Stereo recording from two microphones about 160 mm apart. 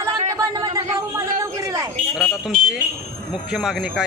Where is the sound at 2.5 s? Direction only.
60° right (ahead or behind).